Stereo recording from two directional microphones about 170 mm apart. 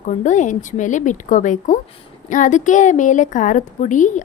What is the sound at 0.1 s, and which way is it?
A woman's voice, 45° left (ahead or behind).